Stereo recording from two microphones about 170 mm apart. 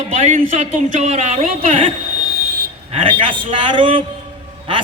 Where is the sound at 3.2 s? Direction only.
30° right (ahead or behind).